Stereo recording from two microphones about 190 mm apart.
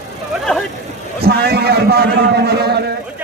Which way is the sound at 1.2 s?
55° right (ahead or behind).